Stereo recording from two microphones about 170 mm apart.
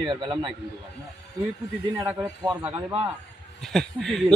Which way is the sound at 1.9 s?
15° right (ahead or behind).